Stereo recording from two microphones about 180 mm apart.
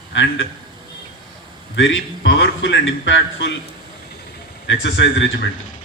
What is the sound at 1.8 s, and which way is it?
A man's voice, 90° left.